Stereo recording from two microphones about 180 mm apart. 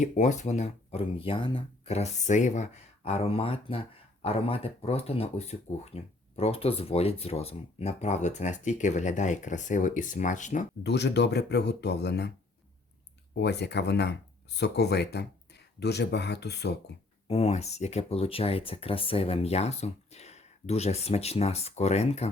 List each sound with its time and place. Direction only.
0.0 s speech: 40° left (ahead or behind)
10.8 s speech: 70° left (ahead or behind)
13.3 s speech: 70° left (ahead or behind)
17.2 s speech: 35° left (ahead or behind)